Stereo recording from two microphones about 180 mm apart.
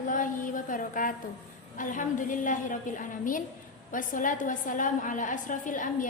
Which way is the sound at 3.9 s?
45° left (ahead or behind).